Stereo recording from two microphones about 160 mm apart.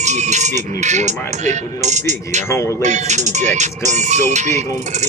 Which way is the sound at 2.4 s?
20° left (ahead or behind).